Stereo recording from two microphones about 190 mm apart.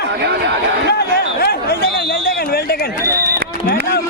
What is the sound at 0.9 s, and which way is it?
A man's voice, 55° left (ahead or behind).